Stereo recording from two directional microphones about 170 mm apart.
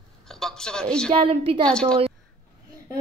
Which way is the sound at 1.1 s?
30° right (ahead or behind).